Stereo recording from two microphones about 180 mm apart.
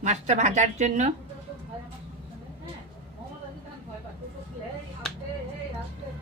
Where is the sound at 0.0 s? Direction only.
40° right (ahead or behind).